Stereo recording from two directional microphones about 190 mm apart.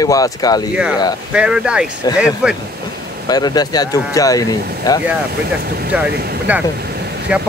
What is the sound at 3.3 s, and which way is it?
Speech, 20° left (ahead or behind).